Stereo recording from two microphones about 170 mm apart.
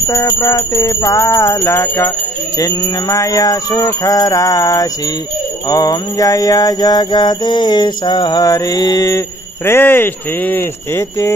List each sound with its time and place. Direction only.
0.4 s music: 20° left (ahead or behind)
9.7 s speech: 15° left (ahead or behind)